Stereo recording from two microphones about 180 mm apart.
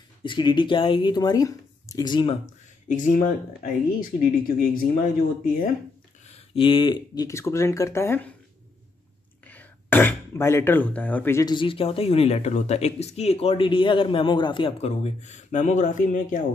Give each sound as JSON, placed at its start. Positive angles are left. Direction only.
{"t": 0.2, "sound": "speech", "side_deg": 25}
{"t": 2.9, "sound": "speech", "side_deg": 50}
{"t": 6.2, "sound": "speech", "side_deg": 35}
{"t": 9.5, "sound": "speech", "side_deg": 10}
{"t": 11.5, "sound": "speech", "side_deg": 30}